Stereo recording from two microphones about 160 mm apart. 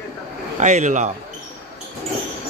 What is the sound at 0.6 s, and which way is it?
Speech, 45° right (ahead or behind).